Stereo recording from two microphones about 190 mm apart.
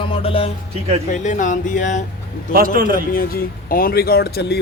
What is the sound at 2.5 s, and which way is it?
Speech, 50° right (ahead or behind).